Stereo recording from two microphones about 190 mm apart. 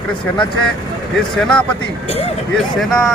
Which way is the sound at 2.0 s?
30° left (ahead or behind).